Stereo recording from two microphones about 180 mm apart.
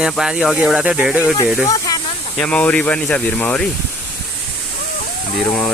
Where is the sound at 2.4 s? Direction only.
5° left (ahead or behind).